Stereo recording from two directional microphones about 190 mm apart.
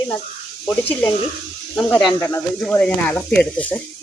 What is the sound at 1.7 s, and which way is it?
Speech, 5° left (ahead or behind).